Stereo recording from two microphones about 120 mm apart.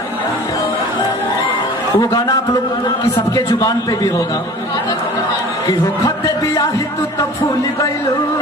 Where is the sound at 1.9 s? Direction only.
30° left (ahead or behind).